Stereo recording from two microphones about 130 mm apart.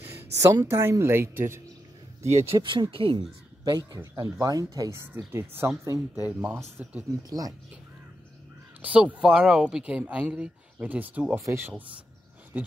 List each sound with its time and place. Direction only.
0.0 s speech: 15° right (ahead or behind)
2.4 s speech: 40° right (ahead or behind); by 7.1 s 10° right (ahead or behind)
7.2 s speech: 30° right (ahead or behind)
8.8 s speech: 10° right (ahead or behind)